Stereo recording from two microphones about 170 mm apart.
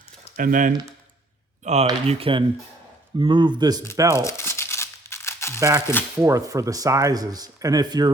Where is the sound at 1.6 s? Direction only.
40° right (ahead or behind); by 4.2 s 20° right (ahead or behind).